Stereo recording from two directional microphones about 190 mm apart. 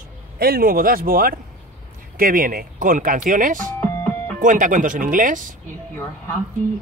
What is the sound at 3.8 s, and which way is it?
Music, 10° left (ahead or behind).